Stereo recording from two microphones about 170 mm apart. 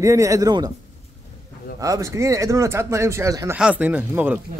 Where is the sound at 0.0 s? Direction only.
20° right (ahead or behind).